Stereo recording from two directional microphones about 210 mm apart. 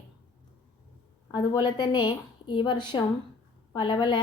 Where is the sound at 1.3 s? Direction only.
20° left (ahead or behind).